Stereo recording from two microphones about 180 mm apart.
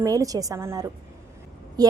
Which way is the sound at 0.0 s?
20° right (ahead or behind).